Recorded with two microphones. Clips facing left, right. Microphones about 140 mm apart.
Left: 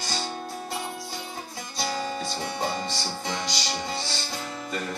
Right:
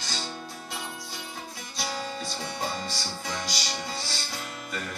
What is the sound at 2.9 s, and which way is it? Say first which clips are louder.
Music: left 3 dB; 25° left (ahead or behind).